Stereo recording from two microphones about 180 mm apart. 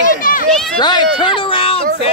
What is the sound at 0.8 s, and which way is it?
Speech, 25° left (ahead or behind).